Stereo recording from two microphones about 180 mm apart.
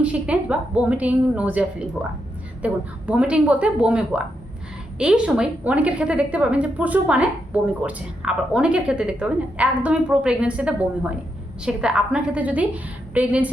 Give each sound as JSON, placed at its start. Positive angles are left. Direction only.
{"t": 0.0, "sound": "a woman's voice", "side_deg": -5}